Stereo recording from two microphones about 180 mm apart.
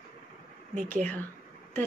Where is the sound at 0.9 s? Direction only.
10° left (ahead or behind).